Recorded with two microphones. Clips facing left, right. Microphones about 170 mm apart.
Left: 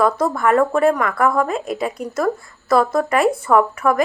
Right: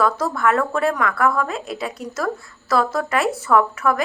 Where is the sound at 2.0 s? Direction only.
10° left (ahead or behind).